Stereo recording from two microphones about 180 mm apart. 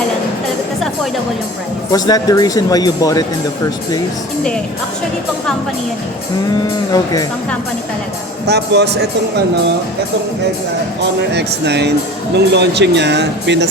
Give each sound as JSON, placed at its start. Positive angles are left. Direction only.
{"t": 1.9, "sound": "speech", "side_deg": 20}
{"t": 6.9, "sound": "speech", "side_deg": 20}
{"t": 8.4, "sound": "speech", "side_deg": -70}
{"t": 11.3, "sound": "speech", "side_deg": -70}